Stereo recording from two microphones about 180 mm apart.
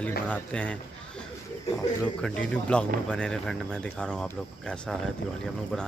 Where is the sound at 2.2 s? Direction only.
5° left (ahead or behind).